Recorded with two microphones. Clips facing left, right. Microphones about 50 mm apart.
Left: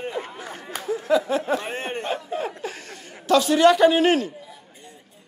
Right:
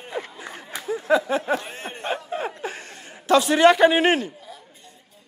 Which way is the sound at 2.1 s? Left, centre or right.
Centre.